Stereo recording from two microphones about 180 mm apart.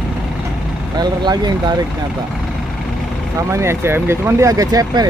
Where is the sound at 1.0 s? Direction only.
25° right (ahead or behind).